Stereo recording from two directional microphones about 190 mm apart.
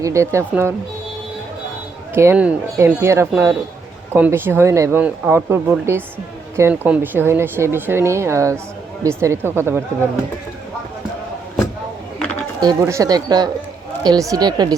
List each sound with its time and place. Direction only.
0.0 s speech: 15° right (ahead or behind)
2.1 s speech: 10° right (ahead or behind)
12.6 s speech: 15° right (ahead or behind)